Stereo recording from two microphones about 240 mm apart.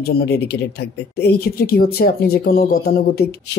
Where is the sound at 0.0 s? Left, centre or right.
Left.